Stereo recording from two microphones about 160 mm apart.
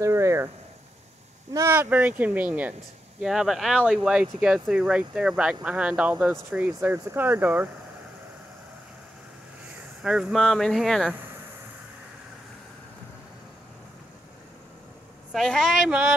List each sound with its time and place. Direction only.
0.0 s speech: 15° right (ahead or behind)
1.5 s speech: 15° right (ahead or behind)
10.0 s speech: 5° right (ahead or behind)
15.3 s speech: 5° left (ahead or behind)